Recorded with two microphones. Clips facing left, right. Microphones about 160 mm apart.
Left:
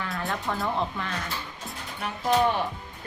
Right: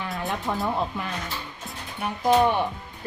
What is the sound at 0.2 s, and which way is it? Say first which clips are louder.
Music: right 2 dB; 20° right (ahead or behind).